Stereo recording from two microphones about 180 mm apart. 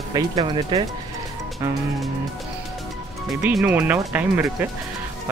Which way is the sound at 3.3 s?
5° right (ahead or behind).